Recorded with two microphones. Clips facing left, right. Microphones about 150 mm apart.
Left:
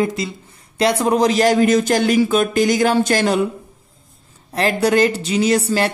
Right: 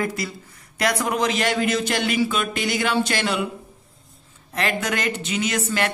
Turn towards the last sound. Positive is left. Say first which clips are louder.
# left 7 dB
turn(degrees=35)  # may be behind; listen again after turning